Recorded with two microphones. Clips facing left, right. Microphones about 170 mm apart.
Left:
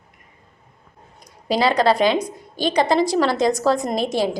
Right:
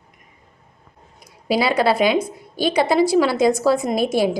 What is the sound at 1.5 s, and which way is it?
A woman's voice, 10° right (ahead or behind).